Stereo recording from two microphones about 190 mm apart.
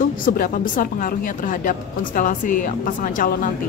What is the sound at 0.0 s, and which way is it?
A woman's voice, 45° left (ahead or behind).